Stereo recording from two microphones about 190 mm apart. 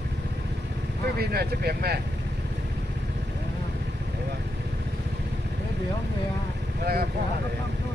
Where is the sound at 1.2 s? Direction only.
55° right (ahead or behind).